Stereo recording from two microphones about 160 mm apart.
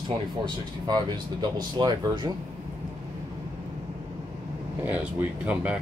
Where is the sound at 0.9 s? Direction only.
25° right (ahead or behind).